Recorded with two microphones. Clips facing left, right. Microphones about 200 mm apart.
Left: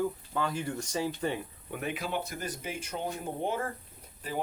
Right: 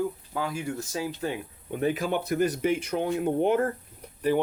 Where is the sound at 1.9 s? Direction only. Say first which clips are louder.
Right 7 dB; 50° right (ahead or behind).